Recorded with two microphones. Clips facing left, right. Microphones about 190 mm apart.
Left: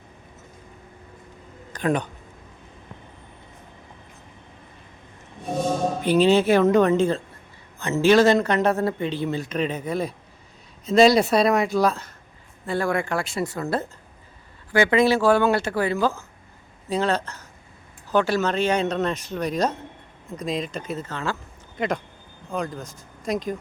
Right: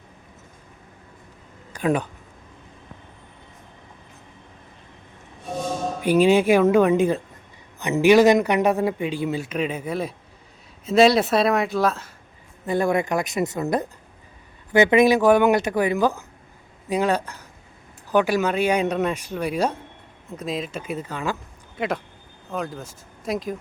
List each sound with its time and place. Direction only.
1.7 s speech: 5° right (ahead or behind)
6.0 s a man's voice: 10° right (ahead or behind)
12.6 s a man's voice: 20° right (ahead or behind); by 23.6 s 5° right (ahead or behind)